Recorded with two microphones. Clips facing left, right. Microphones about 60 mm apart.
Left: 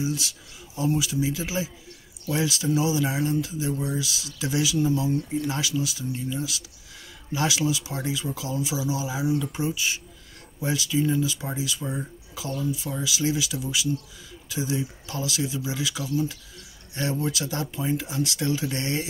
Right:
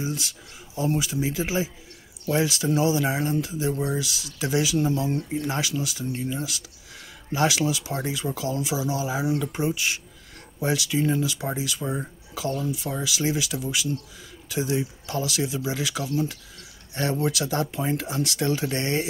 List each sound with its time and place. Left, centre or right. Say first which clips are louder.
0.0 s speech: left 2 dB; right
9.8 s speech: right 1 dB; right
11.8 s speech: right 2 dB; centre
12.4 s speech: right 2 dB; right
17.5 s speech: right 2 dB; right